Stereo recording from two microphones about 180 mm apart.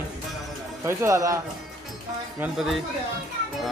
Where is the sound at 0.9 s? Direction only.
15° right (ahead or behind).